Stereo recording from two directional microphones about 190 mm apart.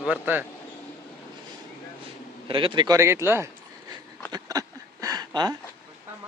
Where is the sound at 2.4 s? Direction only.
25° right (ahead or behind).